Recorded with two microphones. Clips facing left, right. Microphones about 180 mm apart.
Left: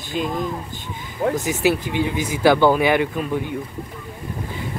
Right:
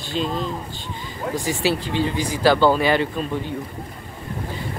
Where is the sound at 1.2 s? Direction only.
50° left (ahead or behind).